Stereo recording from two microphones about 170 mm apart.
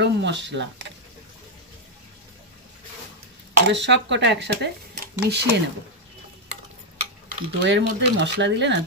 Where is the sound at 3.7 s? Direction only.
90° right; by 5.1 s 70° right (ahead or behind).